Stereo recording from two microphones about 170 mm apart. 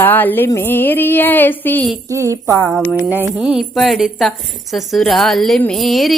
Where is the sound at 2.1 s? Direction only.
20° right (ahead or behind).